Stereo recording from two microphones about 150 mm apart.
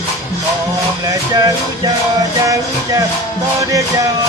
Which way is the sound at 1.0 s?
25° right (ahead or behind).